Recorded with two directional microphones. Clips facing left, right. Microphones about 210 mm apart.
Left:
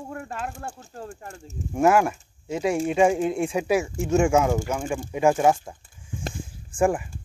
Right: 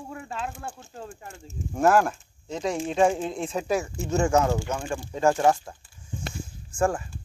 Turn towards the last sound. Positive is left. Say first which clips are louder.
# left 3 dB
turn(degrees=15)  # may be behind; listen again after turning